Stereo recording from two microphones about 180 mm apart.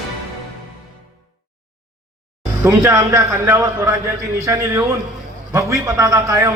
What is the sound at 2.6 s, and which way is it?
A man's voice, 15° right (ahead or behind).